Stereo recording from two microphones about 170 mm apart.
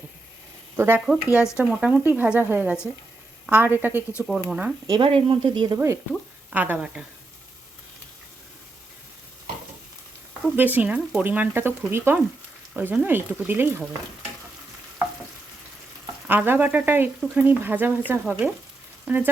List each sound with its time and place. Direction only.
0.8 s speech: 10° right (ahead or behind)
4.9 s speech: 30° right (ahead or behind); by 7.0 s 5° right (ahead or behind)
10.5 s speech: 10° right (ahead or behind)
16.2 s speech: 10° right (ahead or behind)